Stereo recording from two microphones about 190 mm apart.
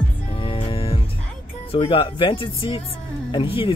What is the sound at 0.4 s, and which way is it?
Music, 30° left (ahead or behind).